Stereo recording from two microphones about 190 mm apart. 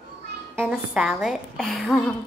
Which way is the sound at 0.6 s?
5° right (ahead or behind).